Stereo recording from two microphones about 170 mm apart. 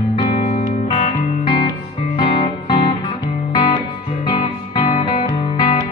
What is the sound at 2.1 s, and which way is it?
Music, 30° left (ahead or behind).